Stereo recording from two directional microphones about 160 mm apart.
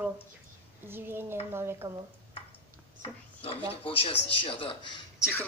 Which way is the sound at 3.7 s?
35° left (ahead or behind).